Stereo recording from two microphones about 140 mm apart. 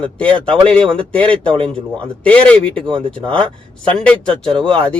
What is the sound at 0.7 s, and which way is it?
Speech, 40° right (ahead or behind).